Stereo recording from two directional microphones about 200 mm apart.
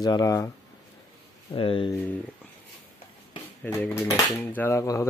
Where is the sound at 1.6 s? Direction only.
25° left (ahead or behind).